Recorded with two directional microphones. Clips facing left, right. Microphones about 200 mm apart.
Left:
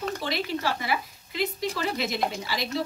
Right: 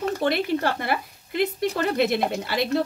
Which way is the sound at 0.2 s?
55° right (ahead or behind).